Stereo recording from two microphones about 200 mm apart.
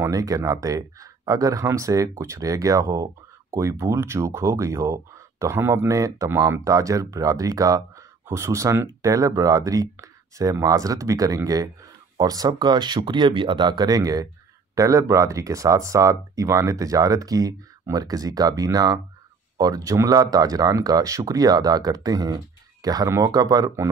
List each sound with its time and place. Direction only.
0.0 s speech: 15° right (ahead or behind)